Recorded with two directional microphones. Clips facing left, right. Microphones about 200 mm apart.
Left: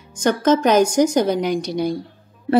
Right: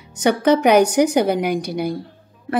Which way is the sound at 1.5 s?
55° right (ahead or behind).